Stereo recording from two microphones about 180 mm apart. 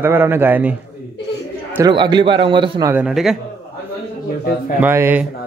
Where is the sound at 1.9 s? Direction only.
25° right (ahead or behind).